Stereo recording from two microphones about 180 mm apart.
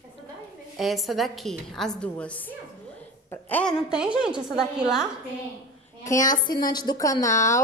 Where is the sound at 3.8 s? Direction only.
5° right (ahead or behind).